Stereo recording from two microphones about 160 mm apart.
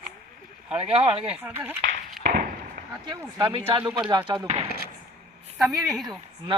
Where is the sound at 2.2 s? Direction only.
65° right (ahead or behind).